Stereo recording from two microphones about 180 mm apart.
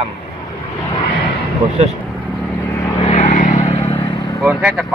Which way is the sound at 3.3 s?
45° left (ahead or behind).